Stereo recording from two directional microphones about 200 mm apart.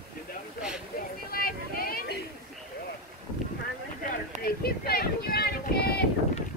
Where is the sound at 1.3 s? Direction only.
45° left (ahead or behind).